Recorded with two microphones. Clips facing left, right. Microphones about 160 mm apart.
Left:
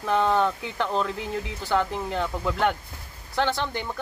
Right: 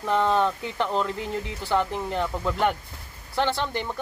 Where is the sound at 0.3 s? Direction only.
15° right (ahead or behind).